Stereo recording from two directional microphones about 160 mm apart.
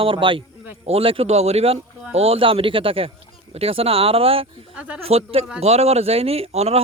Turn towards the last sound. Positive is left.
turn(degrees=-40)  # may be behind; listen again after turning